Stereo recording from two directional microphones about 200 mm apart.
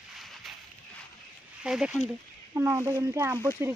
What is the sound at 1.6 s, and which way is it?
Speech, 5° right (ahead or behind).